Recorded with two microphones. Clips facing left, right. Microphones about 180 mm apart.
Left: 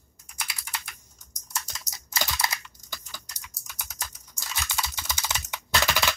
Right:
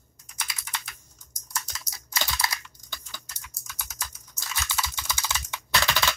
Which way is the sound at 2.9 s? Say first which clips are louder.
Left 1 dB; 15° left (ahead or behind).